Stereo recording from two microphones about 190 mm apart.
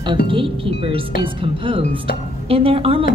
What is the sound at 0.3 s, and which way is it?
A man's voice, 30° right (ahead or behind).